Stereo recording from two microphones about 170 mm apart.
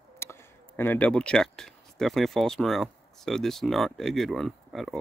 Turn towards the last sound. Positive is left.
turn(degrees=0)  # may be behind; listen again after turning